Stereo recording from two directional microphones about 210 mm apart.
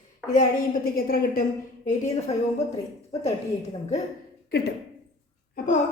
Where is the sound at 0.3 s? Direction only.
40° left (ahead or behind).